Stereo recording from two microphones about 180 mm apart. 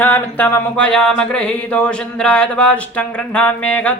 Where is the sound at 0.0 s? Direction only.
10° left (ahead or behind).